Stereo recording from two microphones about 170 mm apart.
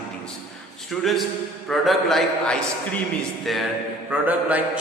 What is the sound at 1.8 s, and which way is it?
A man's voice, centre (ahead or behind).